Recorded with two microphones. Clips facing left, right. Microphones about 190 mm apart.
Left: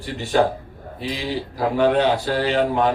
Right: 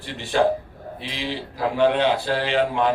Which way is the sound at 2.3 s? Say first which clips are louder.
Left 2 dB; 40° left (ahead or behind).